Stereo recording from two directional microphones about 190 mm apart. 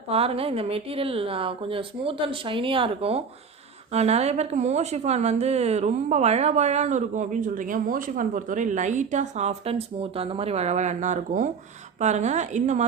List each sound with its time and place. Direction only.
0.1 s a woman's voice: 30° right (ahead or behind)